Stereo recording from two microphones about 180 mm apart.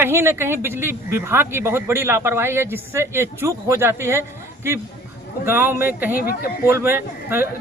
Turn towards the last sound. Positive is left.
turn(degrees=-10)  # may be behind; listen again after turning